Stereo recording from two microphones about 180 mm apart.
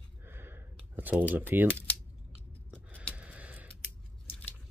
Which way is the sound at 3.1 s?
5° right (ahead or behind).